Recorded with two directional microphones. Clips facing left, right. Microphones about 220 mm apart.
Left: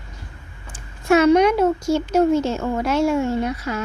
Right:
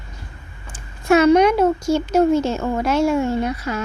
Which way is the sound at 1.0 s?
40° right (ahead or behind).